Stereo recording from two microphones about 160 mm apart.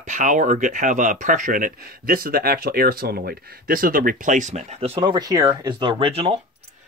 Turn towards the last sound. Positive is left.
turn(degrees=-35)  # may be behind; listen again after turning